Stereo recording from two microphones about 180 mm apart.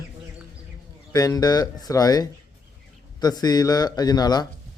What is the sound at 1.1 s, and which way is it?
Speech, 20° left (ahead or behind).